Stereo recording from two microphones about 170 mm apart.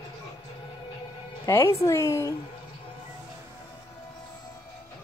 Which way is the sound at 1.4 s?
15° left (ahead or behind).